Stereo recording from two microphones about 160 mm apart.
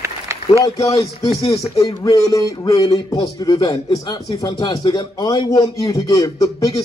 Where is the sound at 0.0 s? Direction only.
20° right (ahead or behind).